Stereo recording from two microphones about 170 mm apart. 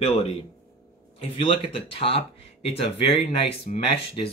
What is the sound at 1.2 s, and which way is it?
Speech, 30° left (ahead or behind).